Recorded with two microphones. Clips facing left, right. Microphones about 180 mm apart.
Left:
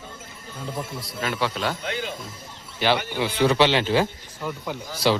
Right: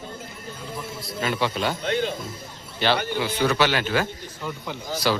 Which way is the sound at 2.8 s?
10° left (ahead or behind).